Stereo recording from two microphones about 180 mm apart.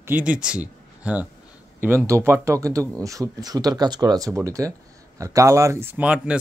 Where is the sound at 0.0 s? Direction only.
10° right (ahead or behind).